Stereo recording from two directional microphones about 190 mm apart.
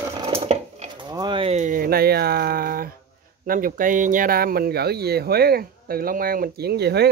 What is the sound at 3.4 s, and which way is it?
Speech, 45° right (ahead or behind).